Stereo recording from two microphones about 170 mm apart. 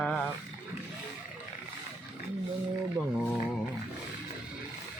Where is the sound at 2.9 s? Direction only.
5° left (ahead or behind).